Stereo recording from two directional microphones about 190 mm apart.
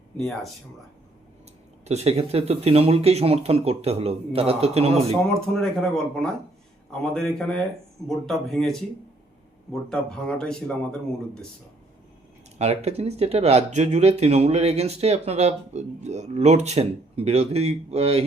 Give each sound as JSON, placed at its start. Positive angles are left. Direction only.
{"t": 0.2, "sound": "speech", "side_deg": 0}
{"t": 1.8, "sound": "speech", "side_deg": -35}
{"t": 5.5, "sound": "speech", "side_deg": 5}
{"t": 9.9, "sound": "speech", "side_deg": 5}
{"t": 12.5, "sound": "speech", "side_deg": -35}